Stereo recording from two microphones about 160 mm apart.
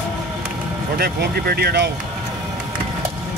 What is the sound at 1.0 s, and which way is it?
Speech, 75° right (ahead or behind).